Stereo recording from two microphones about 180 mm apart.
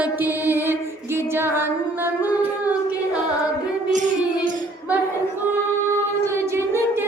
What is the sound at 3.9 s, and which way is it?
Child singing, 45° right (ahead or behind).